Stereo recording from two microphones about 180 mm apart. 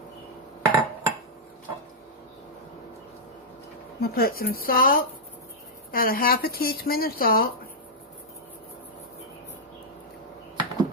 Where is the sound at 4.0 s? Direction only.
55° left (ahead or behind).